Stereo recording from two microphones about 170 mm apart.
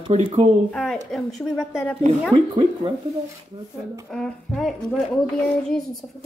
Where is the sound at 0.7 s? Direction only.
5° left (ahead or behind).